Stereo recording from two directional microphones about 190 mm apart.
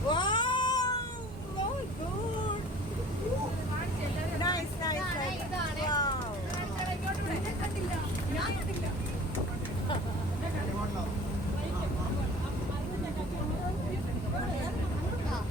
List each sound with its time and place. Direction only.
0.1 s cat: 25° left (ahead or behind)
4.4 s vehicle: 20° left (ahead or behind)